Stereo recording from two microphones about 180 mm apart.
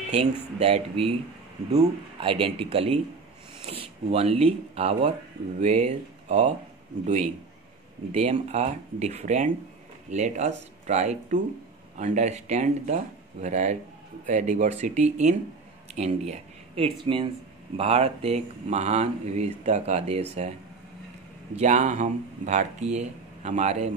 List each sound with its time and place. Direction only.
0.6 s speech: 35° right (ahead or behind)
8.1 s speech: 35° right (ahead or behind)
21.5 s speech: 40° right (ahead or behind)